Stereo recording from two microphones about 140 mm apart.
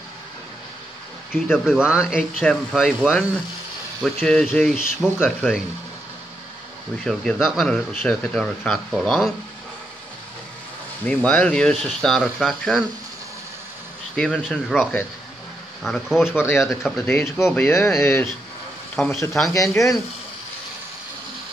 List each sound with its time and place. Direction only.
1.3 s speech: 5° right (ahead or behind)
7.1 s speech: centre (ahead or behind)
11.2 s speech: 10° left (ahead or behind)
14.1 s speech: 5° left (ahead or behind)
15.8 s speech: centre (ahead or behind)
17.0 s speech: 15° left (ahead or behind)